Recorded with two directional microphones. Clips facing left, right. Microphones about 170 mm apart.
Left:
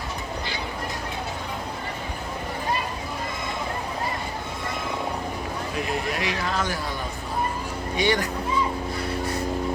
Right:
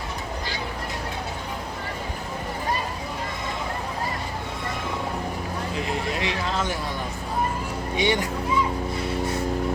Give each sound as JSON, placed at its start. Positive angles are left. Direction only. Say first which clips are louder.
{"t": 5.7, "sound": "speech", "louder": "left 1 dB", "side_deg": -25}
{"t": 7.9, "sound": "speech", "louder": "even", "side_deg": -20}